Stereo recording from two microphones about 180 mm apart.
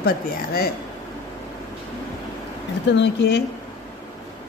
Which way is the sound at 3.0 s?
70° left (ahead or behind).